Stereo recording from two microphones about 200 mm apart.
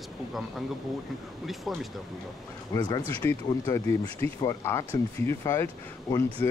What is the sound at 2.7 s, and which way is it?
Speech, 20° left (ahead or behind).